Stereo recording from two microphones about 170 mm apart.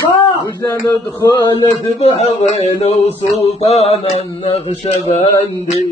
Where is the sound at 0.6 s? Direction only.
20° left (ahead or behind).